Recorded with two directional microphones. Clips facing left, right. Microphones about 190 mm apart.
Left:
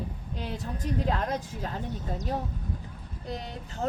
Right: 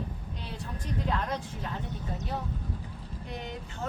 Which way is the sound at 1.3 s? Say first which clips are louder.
Left 3 dB; 40° left (ahead or behind).